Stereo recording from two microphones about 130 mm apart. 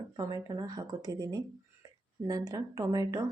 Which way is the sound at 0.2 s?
30° right (ahead or behind).